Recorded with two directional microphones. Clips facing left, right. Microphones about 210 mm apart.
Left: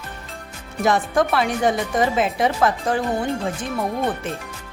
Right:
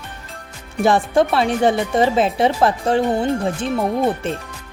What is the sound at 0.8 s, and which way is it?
Speech, 30° right (ahead or behind).